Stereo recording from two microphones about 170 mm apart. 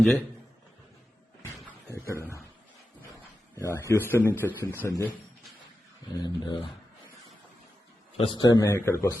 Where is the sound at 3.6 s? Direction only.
15° left (ahead or behind).